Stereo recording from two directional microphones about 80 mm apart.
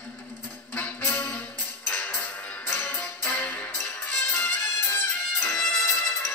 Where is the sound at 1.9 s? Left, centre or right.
Centre.